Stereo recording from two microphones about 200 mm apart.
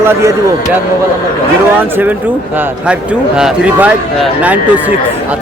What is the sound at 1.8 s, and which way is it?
Speech, 10° right (ahead or behind).